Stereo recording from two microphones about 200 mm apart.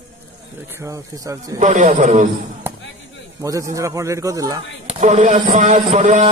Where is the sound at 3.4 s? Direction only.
15° right (ahead or behind).